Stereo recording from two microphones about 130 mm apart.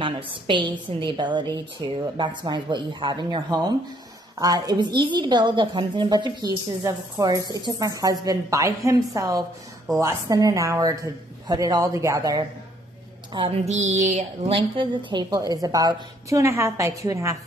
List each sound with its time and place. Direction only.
0.0 s a woman's voice: 40° right (ahead or behind)
13.3 s speech: 40° right (ahead or behind)
13.7 s a woman's voice: 60° right (ahead or behind); by 17.4 s 25° right (ahead or behind)